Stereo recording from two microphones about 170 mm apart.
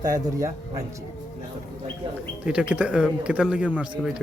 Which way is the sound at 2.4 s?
5° right (ahead or behind).